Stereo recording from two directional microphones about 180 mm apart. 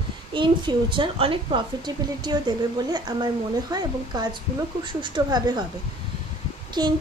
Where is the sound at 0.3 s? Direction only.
25° right (ahead or behind).